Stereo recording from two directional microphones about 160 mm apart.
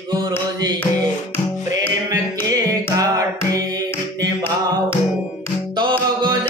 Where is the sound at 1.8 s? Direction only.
20° right (ahead or behind).